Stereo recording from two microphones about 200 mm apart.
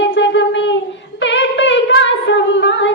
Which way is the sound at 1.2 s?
65° left (ahead or behind).